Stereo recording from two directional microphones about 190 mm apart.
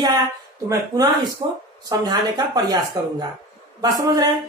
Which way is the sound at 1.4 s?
25° right (ahead or behind).